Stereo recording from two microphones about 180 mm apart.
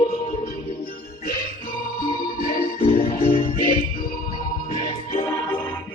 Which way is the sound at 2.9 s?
45° left (ahead or behind).